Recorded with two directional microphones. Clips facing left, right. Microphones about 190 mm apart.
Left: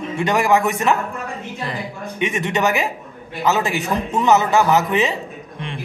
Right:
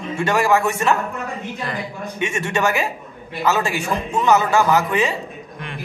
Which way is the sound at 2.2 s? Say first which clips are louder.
Left 1 dB; 20° left (ahead or behind).